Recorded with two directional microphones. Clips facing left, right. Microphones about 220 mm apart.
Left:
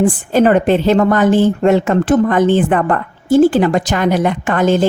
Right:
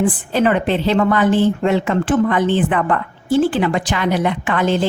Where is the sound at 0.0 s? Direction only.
45° left (ahead or behind).